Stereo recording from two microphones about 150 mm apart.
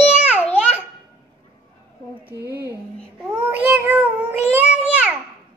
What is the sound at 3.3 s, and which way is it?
Cat, 10° right (ahead or behind).